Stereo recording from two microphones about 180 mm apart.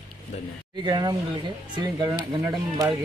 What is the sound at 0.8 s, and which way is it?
Speech, 25° right (ahead or behind).